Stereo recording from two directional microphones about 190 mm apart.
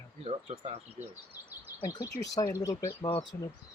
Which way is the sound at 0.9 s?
10° right (ahead or behind).